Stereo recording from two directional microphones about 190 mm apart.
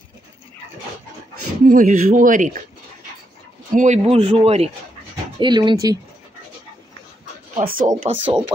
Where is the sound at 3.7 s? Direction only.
40° right (ahead or behind); by 5.9 s 20° right (ahead or behind).